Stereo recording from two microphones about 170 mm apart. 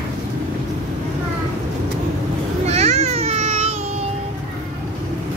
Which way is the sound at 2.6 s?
40° right (ahead or behind).